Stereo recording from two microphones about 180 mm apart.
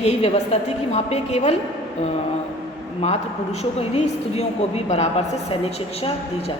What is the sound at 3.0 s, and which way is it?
A woman's voice, 35° left (ahead or behind).